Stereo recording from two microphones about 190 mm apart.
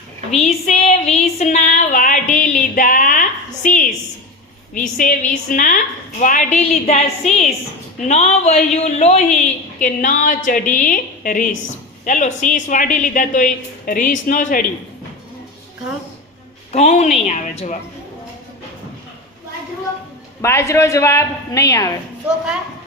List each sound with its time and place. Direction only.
0.3 s a sound: 35° left (ahead or behind)
4.7 s a woman's voice: 45° left (ahead or behind)
16.7 s a woman's voice: 35° left (ahead or behind)
20.4 s a woman's voice: 15° left (ahead or behind)